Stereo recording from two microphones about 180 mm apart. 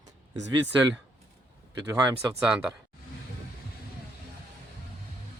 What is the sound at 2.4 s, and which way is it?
Speech, 5° right (ahead or behind).